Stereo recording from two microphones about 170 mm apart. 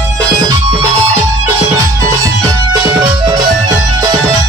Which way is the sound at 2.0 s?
20° right (ahead or behind).